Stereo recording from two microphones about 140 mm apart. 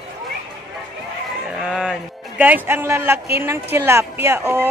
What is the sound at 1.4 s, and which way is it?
Speech, 5° right (ahead or behind).